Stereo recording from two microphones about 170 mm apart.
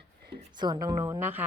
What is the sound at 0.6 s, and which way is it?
Speech, 25° right (ahead or behind).